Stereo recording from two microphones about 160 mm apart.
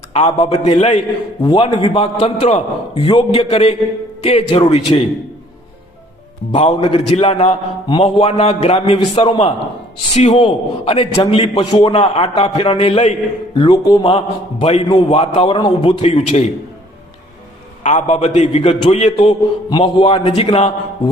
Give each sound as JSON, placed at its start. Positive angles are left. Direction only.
{"t": 0.1, "sound": "a man's voice", "side_deg": 40}
{"t": 1.4, "sound": "a man's voice", "side_deg": 30}
{"t": 6.6, "sound": "a man's voice", "side_deg": 40}
{"t": 13.6, "sound": "a man's voice", "side_deg": 25}
{"t": 17.8, "sound": "a man's voice", "side_deg": 45}